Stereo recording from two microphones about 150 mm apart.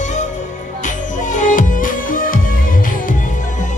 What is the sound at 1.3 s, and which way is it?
Music, 60° left (ahead or behind).